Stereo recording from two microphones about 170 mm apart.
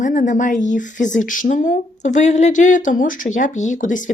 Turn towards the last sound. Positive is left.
turn(degrees=45)  # may be behind; listen again after turning